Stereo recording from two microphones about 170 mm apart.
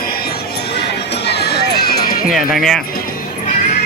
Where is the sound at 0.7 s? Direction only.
80° left.